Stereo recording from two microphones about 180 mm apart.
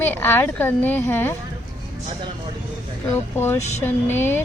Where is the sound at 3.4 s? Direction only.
15° left (ahead or behind).